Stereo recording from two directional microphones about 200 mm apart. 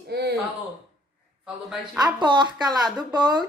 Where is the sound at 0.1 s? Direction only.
55° right (ahead or behind).